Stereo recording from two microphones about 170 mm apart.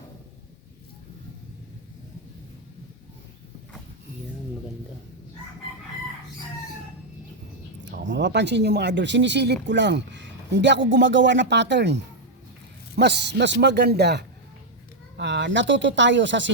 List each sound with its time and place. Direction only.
7.9 s a man's voice: 90° right
15.2 s speech: 90° right